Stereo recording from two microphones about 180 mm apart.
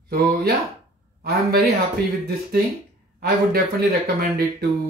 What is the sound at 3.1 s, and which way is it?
Speech, 55° right (ahead or behind).